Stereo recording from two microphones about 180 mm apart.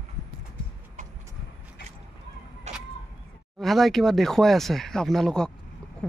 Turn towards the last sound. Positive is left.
turn(degrees=5)  # may be behind; listen again after turning